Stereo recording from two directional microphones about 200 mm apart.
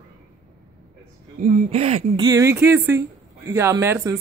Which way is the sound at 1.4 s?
30° right (ahead or behind).